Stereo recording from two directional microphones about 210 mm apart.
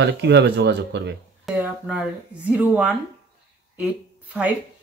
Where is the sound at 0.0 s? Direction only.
55° right (ahead or behind).